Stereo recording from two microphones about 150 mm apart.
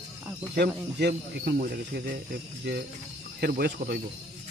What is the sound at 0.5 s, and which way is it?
Speech, 90° right.